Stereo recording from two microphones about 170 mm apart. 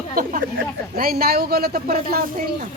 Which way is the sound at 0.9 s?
60° right (ahead or behind).